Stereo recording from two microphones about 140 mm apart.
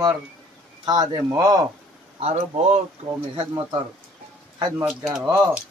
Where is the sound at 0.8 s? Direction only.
25° right (ahead or behind).